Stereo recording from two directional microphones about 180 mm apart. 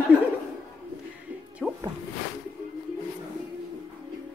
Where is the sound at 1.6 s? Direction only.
Centre (ahead or behind).